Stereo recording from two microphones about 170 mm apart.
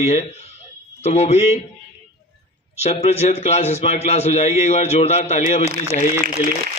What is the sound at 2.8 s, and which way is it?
A man's voice, 40° left (ahead or behind).